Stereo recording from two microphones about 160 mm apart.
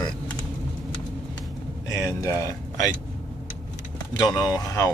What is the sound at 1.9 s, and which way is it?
Speech, 20° left (ahead or behind).